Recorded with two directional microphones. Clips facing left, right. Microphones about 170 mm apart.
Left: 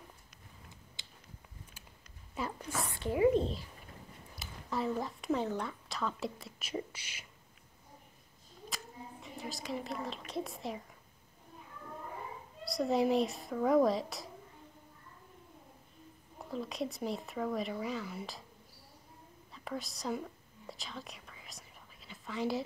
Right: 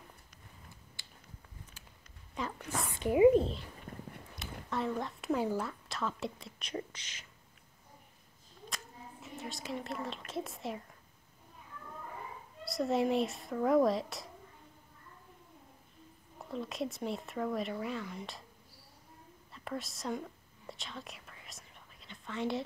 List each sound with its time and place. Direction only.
1.0 s a sound: 20° left (ahead or behind)
2.3 s a sound: 5° left (ahead or behind)
2.9 s speech: 20° right (ahead or behind)
4.4 s a woman's voice: centre (ahead or behind)
8.6 s a woman's voice: centre (ahead or behind)
12.6 s speech: centre (ahead or behind)
16.3 s speech: centre (ahead or behind)
19.5 s whispering: centre (ahead or behind)